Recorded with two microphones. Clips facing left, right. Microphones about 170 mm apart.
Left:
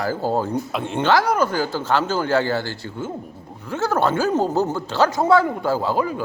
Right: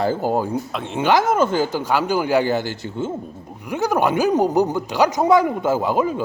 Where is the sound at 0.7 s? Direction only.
Centre (ahead or behind).